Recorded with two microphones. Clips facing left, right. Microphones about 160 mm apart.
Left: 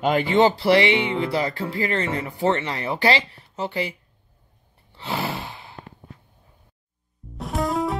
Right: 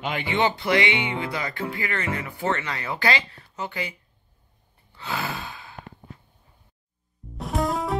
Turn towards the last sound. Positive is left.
turn(degrees=0)  # may be behind; listen again after turning